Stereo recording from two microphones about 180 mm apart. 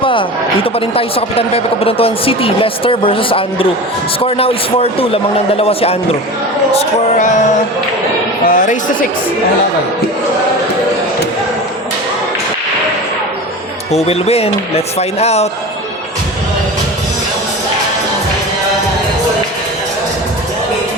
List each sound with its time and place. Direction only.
0.0 s speech: 30° left (ahead or behind)
6.7 s music: 45° left (ahead or behind)
8.4 s music: 45° left (ahead or behind)
13.9 s speech: 35° left (ahead or behind)